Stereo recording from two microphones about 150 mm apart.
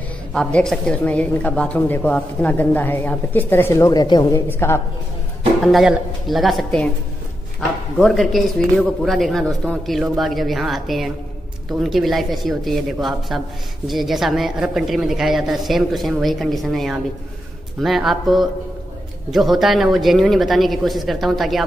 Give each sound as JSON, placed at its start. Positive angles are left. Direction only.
{"t": 0.3, "sound": "a woman's voice", "side_deg": 5}
{"t": 4.5, "sound": "a woman's voice", "side_deg": 15}
{"t": 5.6, "sound": "a woman's voice", "side_deg": 0}
{"t": 8.0, "sound": "a woman's voice", "side_deg": 0}